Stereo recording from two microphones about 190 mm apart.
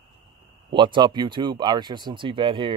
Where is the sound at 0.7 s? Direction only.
25° right (ahead or behind).